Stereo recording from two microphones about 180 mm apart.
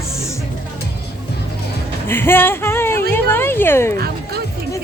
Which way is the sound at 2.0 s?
10° left (ahead or behind).